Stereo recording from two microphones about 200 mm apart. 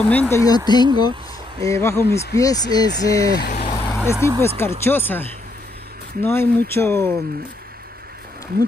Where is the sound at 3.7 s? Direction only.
15° left (ahead or behind).